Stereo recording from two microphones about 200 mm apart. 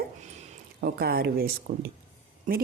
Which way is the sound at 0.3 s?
35° right (ahead or behind).